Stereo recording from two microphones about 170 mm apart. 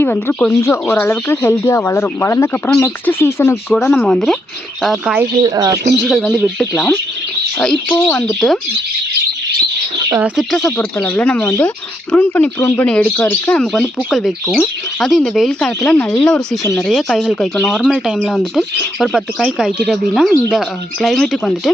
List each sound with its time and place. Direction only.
0.0 s speech: 10° left (ahead or behind); by 5.3 s 5° right (ahead or behind)
5.4 s speech: 20° right (ahead or behind)
5.7 s speech: 75° right (ahead or behind)
6.0 s speech: centre (ahead or behind)
10.2 s speech: 5° right (ahead or behind)
10.7 s speech: 10° left (ahead or behind)